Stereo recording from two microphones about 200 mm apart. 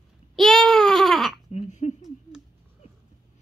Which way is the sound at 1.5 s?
35° left (ahead or behind).